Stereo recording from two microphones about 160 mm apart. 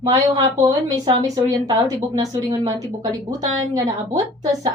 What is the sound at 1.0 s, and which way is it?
A woman's voice, 25° right (ahead or behind).